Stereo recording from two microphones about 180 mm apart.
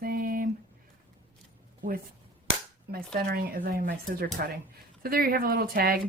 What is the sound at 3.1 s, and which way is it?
Speech, 60° right (ahead or behind).